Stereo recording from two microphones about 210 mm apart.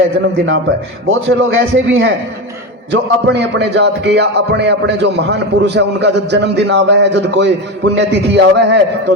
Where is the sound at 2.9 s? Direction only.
55° right (ahead or behind).